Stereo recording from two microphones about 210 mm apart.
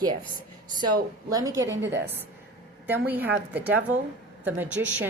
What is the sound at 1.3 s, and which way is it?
A woman's voice, 15° right (ahead or behind).